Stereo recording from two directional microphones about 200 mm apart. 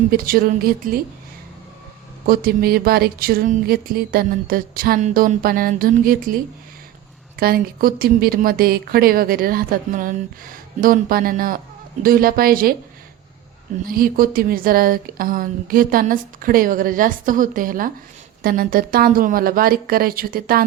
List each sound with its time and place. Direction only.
0.1 s speech: 45° right (ahead or behind)
2.2 s speech: 45° right (ahead or behind)
13.8 s speech: 45° right (ahead or behind)